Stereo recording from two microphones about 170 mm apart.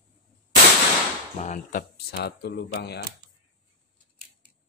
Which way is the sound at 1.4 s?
50° left (ahead or behind).